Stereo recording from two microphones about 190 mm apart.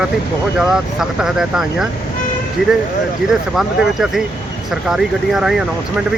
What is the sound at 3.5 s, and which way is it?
Speech, centre (ahead or behind).